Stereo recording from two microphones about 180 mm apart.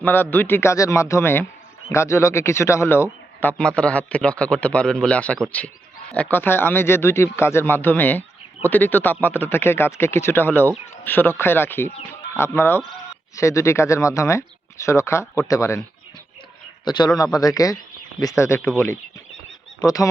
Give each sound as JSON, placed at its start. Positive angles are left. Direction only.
{"t": 0.0, "sound": "speech", "side_deg": 10}
{"t": 16.8, "sound": "a man's voice", "side_deg": 25}
{"t": 19.8, "sound": "speech", "side_deg": 20}